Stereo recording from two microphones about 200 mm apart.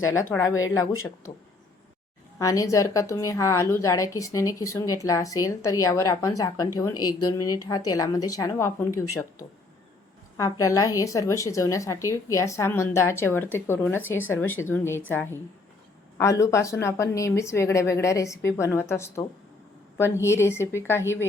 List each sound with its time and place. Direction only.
0.3 s a woman's voice: 15° left (ahead or behind)
2.4 s a woman's voice: 15° left (ahead or behind)
10.3 s a woman's voice: 15° left (ahead or behind)